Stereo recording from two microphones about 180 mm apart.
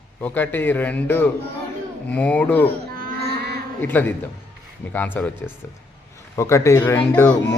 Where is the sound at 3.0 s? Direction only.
65° right (ahead or behind).